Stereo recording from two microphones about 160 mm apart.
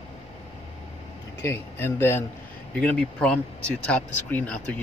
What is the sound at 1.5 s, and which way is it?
Speech, 15° left (ahead or behind).